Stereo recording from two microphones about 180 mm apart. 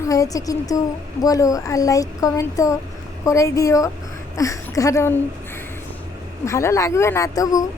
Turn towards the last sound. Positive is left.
turn(degrees=20)  # may be behind; listen again after turning